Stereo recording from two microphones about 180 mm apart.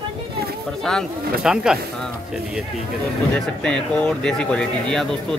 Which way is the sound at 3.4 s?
5° left (ahead or behind).